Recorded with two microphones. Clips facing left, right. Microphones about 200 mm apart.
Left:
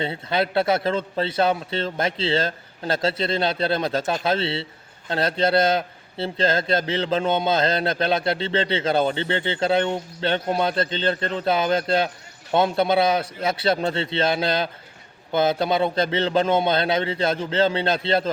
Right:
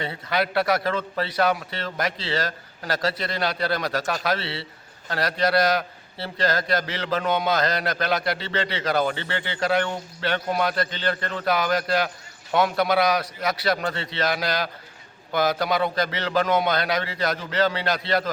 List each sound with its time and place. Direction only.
0.0 s a man's voice: 25° left (ahead or behind)